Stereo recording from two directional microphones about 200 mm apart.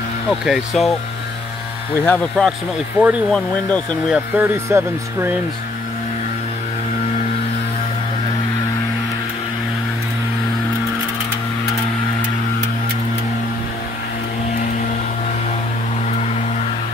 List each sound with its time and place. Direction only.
0.3 s speech: centre (ahead or behind)
2.0 s speech: 5° left (ahead or behind)
3.0 s speech: 5° right (ahead or behind)
3.3 s speech: 5° left (ahead or behind)
4.1 s speech: 10° right (ahead or behind)